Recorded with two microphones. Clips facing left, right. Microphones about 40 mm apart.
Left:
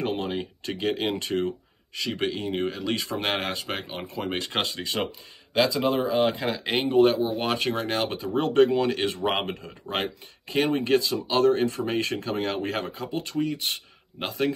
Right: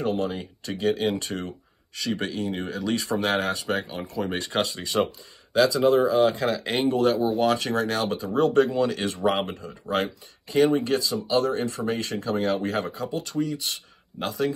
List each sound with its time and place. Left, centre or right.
0.0 s speech: left